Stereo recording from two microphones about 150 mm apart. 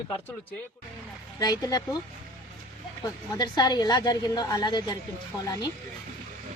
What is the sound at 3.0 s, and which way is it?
A woman's voice, 25° left (ahead or behind).